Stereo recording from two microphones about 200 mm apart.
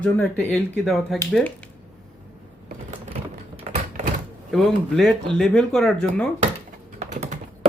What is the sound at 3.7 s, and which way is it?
Door, 35° right (ahead or behind).